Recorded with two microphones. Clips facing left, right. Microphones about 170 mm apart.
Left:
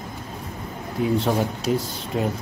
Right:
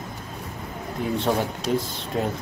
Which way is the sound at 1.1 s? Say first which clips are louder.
Right 1 dB; centre (ahead or behind).